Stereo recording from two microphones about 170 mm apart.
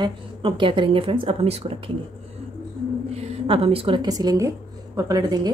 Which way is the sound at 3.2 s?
35° right (ahead or behind).